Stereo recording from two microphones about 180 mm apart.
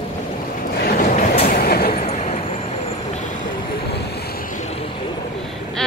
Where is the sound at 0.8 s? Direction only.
50° left (ahead or behind).